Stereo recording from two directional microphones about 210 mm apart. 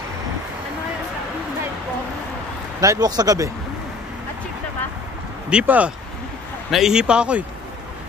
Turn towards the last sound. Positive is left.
turn(degrees=-5)  # may be behind; listen again after turning